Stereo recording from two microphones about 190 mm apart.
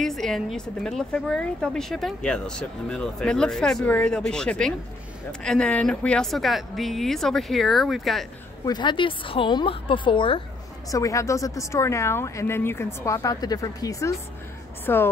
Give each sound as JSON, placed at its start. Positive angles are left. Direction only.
{"t": 0.0, "sound": "a woman's voice", "side_deg": 0}
{"t": 8.6, "sound": "a woman's voice", "side_deg": 25}